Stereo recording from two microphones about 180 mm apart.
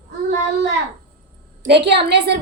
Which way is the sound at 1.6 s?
65° right (ahead or behind).